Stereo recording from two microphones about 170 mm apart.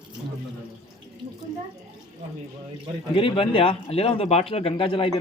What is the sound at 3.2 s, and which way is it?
Speech, 30° left (ahead or behind).